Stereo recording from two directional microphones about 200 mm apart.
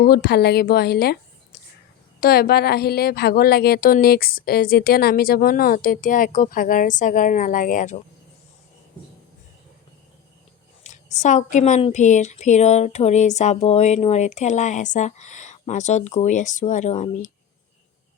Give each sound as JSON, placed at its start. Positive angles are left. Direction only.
{"t": 0.0, "sound": "speech", "side_deg": 50}
{"t": 1.5, "sound": "a sound", "side_deg": 50}
{"t": 2.2, "sound": "speech", "side_deg": 50}
{"t": 10.8, "sound": "a woman's voice", "side_deg": 35}